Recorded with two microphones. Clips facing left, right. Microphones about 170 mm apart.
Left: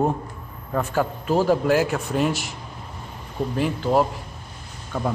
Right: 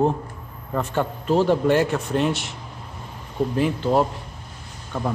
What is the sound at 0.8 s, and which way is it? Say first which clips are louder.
A man's voice: left 1 dB; 5° left (ahead or behind).